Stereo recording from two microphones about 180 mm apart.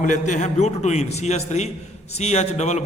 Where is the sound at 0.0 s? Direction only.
45° left (ahead or behind).